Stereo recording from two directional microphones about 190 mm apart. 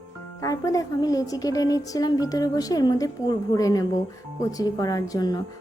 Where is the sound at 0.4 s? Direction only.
15° left (ahead or behind).